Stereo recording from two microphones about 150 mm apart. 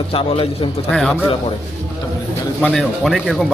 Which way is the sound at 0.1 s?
35° left (ahead or behind).